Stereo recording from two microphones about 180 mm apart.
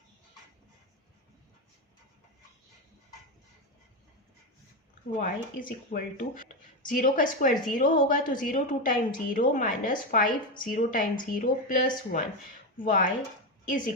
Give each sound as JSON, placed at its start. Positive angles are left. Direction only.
{"t": 5.1, "sound": "speech", "side_deg": 45}